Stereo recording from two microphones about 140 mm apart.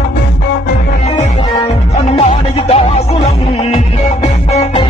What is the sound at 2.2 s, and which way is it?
Music, 45° left (ahead or behind).